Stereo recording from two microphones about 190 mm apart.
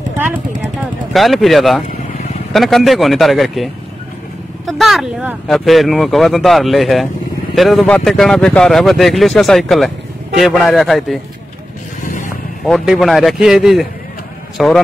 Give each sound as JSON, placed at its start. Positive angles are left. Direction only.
{"t": 1.1, "sound": "speech", "side_deg": 0}
{"t": 12.0, "sound": "vehicle", "side_deg": 45}
{"t": 12.6, "sound": "speech", "side_deg": 0}